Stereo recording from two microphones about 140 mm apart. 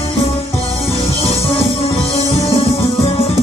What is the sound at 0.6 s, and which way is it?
Music, 45° left (ahead or behind).